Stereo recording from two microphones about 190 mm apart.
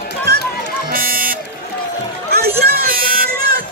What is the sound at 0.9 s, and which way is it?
Buzzer, 50° right (ahead or behind).